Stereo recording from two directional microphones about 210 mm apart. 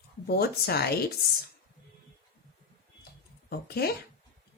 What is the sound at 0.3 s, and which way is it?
Speech, 50° left (ahead or behind).